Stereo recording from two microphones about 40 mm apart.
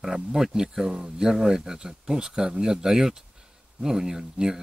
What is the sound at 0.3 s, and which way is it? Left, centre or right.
Speech, centre.